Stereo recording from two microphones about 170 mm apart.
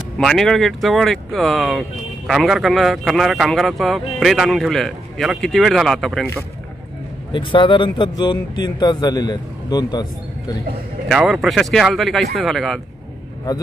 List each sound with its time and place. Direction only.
0.2 s speech: centre (ahead or behind)
7.3 s speech: 30° left (ahead or behind)
11.1 s speech: centre (ahead or behind)